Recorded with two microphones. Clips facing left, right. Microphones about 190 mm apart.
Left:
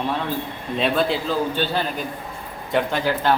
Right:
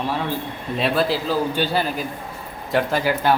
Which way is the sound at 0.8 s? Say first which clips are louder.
Even; 5° right (ahead or behind).